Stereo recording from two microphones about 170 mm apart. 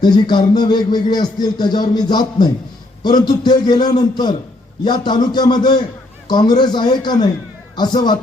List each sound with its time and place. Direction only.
0.0 s speech: 25° left (ahead or behind)